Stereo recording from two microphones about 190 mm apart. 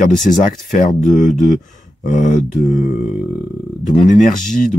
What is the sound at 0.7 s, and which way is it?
Speech, 45° left (ahead or behind).